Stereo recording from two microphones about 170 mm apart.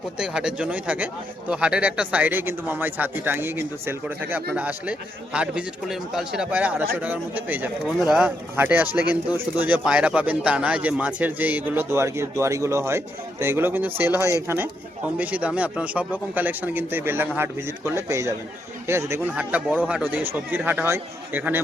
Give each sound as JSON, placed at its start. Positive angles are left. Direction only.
{"t": 0.2, "sound": "a man's voice", "side_deg": -5}